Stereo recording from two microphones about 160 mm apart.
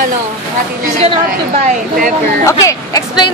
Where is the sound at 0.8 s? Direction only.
40° right (ahead or behind).